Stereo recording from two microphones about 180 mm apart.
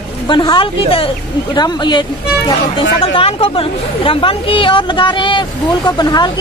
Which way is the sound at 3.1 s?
30° left (ahead or behind).